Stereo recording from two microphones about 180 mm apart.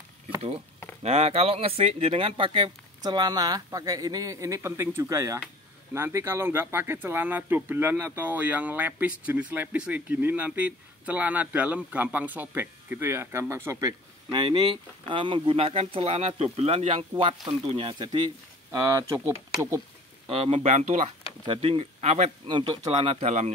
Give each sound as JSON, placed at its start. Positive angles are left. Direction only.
{"t": 1.0, "sound": "speech", "side_deg": -35}
{"t": 20.2, "sound": "speech", "side_deg": -30}
{"t": 21.5, "sound": "speech", "side_deg": -30}